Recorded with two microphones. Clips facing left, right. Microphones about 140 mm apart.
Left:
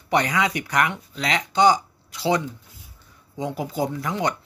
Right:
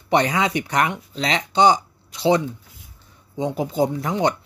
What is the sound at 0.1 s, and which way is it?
Speech, 25° right (ahead or behind).